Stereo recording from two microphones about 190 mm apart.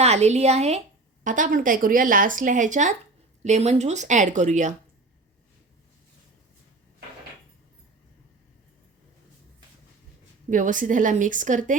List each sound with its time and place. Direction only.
0.0 s a woman's voice: 35° right (ahead or behind)
10.5 s a woman's voice: 45° right (ahead or behind)